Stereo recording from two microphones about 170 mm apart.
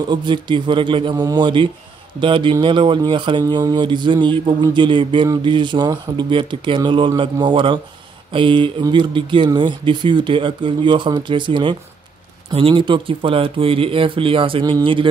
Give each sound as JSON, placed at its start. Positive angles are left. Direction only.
{"t": 0.1, "sound": "speech", "side_deg": -30}